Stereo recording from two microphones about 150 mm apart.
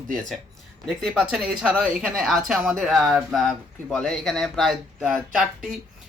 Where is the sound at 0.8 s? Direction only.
Centre (ahead or behind).